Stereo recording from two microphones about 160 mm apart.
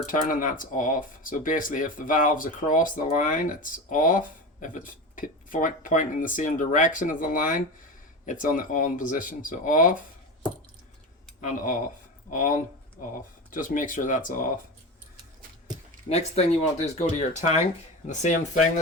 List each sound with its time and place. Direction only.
0.0 s speech: 55° left (ahead or behind)
11.3 s speech: 50° left (ahead or behind)
16.0 s speech: 40° left (ahead or behind)